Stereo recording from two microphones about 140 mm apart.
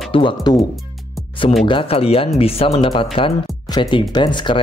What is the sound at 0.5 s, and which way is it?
Music, centre (ahead or behind).